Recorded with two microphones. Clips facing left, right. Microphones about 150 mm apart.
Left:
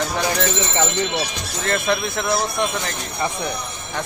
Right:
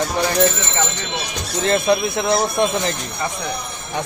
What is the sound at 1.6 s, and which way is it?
Speech, 20° right (ahead or behind).